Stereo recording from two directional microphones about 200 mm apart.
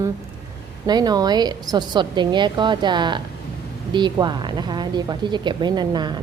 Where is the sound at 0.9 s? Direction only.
20° right (ahead or behind).